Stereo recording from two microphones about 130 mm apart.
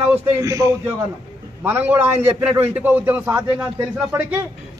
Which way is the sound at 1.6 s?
15° right (ahead or behind).